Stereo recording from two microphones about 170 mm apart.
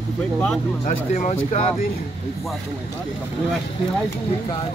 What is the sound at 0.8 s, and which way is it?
Speech, 50° left (ahead or behind).